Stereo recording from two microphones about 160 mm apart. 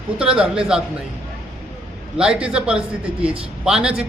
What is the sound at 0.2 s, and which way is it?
Speech, 5° right (ahead or behind).